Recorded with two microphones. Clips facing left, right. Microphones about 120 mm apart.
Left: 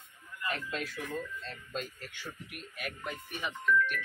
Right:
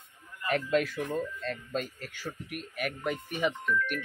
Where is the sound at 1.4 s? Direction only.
55° right (ahead or behind).